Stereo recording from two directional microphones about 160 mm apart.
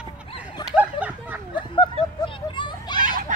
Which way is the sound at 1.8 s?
30° left (ahead or behind).